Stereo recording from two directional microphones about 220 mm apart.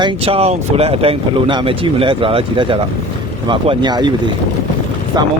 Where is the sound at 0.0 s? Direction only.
25° right (ahead or behind).